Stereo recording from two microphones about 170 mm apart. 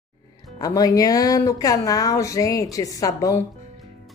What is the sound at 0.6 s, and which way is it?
Speech, 20° left (ahead or behind).